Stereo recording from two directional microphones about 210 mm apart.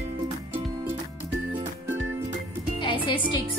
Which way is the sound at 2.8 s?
25° left (ahead or behind).